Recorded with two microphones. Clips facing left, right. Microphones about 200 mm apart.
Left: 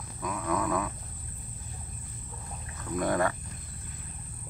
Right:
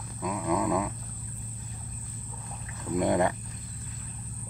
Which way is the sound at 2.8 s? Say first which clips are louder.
Right 3 dB; 20° right (ahead or behind).